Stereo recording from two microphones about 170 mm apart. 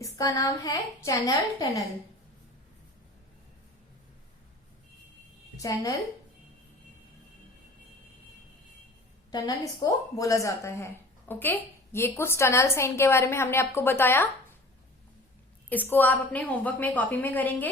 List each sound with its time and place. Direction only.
0.0 s a woman's voice: 20° left (ahead or behind)
5.6 s a woman's voice: 20° left (ahead or behind)
9.3 s a woman's voice: 25° left (ahead or behind)
15.7 s a woman's voice: 10° left (ahead or behind)